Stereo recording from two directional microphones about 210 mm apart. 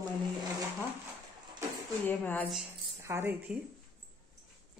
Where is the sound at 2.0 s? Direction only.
10° left (ahead or behind).